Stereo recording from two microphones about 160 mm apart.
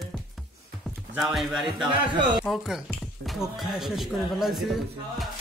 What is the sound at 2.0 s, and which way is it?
Speech, 30° right (ahead or behind).